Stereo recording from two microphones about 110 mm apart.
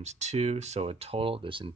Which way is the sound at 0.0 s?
90° right.